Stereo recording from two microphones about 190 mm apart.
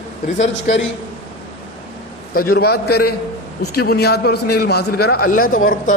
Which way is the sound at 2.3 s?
50° left (ahead or behind).